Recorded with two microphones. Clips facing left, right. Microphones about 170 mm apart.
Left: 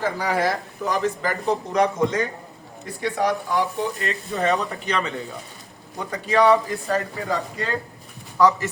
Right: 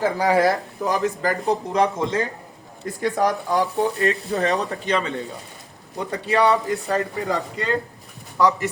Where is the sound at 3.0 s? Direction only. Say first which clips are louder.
Right 2 dB; 45° right (ahead or behind).